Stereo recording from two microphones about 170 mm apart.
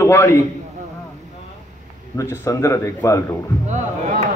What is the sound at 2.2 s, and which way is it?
A man's voice, 15° left (ahead or behind).